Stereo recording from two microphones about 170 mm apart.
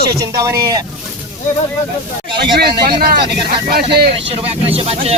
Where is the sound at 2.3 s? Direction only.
25° right (ahead or behind).